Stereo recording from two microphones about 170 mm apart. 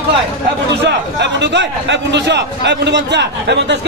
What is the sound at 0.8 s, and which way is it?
A man's voice, 90° right.